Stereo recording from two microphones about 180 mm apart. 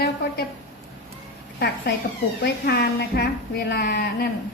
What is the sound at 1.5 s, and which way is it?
A woman's voice, 60° left (ahead or behind).